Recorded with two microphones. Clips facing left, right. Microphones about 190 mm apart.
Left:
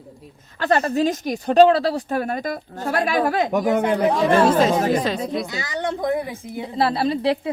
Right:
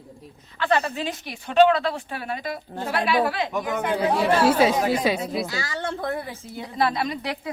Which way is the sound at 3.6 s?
30° left (ahead or behind).